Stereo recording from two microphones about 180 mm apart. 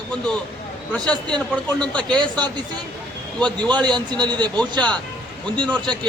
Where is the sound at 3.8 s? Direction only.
25° right (ahead or behind).